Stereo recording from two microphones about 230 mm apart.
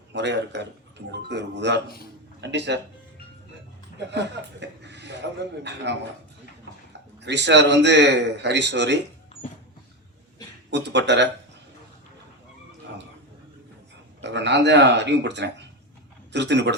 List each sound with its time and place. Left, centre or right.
0.1 s a man's voice: right
4.6 s a man's voice: right
7.2 s a man's voice: right
10.7 s a man's voice: right
14.2 s a man's voice: right